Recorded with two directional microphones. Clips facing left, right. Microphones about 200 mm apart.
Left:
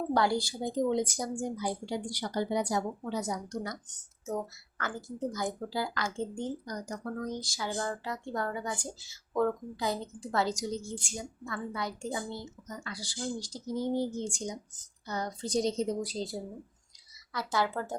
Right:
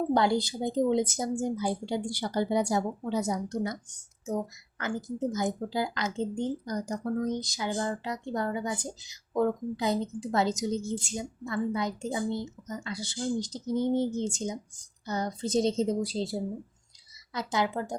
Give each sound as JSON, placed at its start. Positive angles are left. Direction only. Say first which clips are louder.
{"t": 0.1, "sound": "a woman's voice", "louder": "right 1 dB", "side_deg": -20}
{"t": 3.8, "sound": "a woman's voice", "louder": "right 3 dB", "side_deg": -10}
{"t": 17.3, "sound": "a woman's voice", "louder": "right 2 dB", "side_deg": -20}